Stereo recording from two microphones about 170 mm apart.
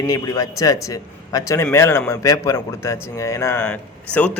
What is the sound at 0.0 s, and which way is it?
A man's voice, 20° left (ahead or behind).